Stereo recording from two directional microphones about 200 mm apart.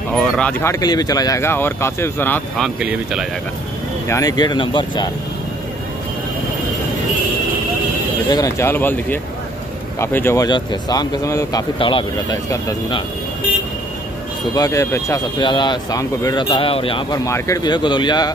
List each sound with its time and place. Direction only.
0.1 s speech: 5° left (ahead or behind)
4.1 s speech: 20° left (ahead or behind)
8.3 s speech: 15° left (ahead or behind)
14.5 s speech: 15° left (ahead or behind)